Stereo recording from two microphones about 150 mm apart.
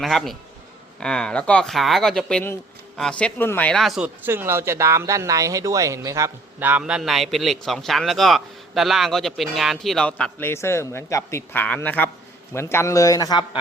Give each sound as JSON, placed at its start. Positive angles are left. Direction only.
{"t": 0.0, "sound": "speech", "side_deg": 0}
{"t": 4.3, "sound": "a man's voice", "side_deg": -15}